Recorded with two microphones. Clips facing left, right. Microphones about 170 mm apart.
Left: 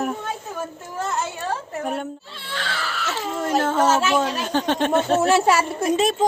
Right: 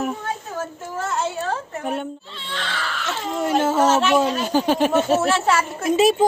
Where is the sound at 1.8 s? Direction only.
Centre (ahead or behind).